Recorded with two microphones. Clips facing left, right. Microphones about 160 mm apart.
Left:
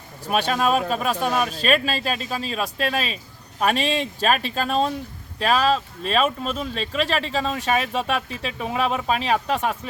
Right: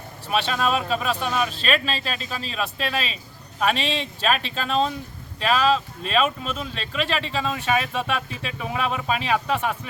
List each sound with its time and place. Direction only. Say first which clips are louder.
0.3 s speech: left 2 dB; 45° left (ahead or behind)